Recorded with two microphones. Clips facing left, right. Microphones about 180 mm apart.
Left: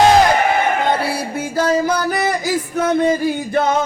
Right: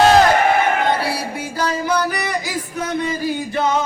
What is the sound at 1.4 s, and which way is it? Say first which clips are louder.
Music: left 5 dB; 45° left (ahead or behind).